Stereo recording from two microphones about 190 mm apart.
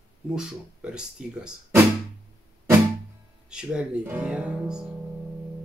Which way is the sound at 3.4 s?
5° right (ahead or behind).